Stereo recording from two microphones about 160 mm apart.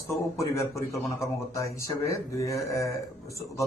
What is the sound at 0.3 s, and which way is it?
Speech, 20° left (ahead or behind).